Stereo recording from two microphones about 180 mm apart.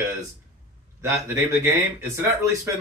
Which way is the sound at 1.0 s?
15° right (ahead or behind).